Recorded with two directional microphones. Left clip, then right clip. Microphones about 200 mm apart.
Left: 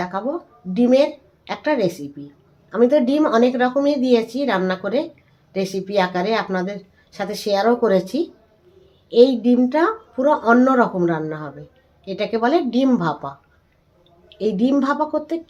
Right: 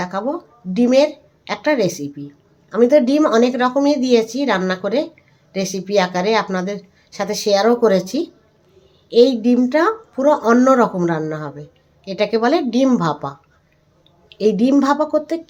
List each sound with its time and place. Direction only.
0.0 s a woman's voice: 20° right (ahead or behind)
14.3 s a woman's voice: 20° right (ahead or behind)